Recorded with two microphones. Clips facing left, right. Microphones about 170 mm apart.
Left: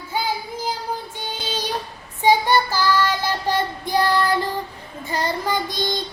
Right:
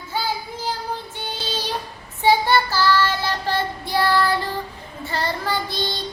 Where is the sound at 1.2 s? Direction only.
15° left (ahead or behind).